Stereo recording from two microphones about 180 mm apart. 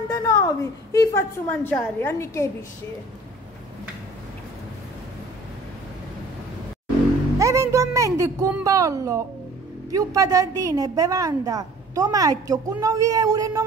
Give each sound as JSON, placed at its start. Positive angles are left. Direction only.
{"t": 0.1, "sound": "a woman's voice", "side_deg": 20}
{"t": 7.3, "sound": "a sound", "side_deg": -15}
{"t": 8.6, "sound": "a woman's voice", "side_deg": -20}